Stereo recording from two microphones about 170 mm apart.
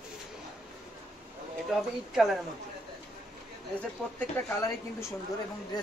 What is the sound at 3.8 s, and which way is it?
Speech, 10° left (ahead or behind).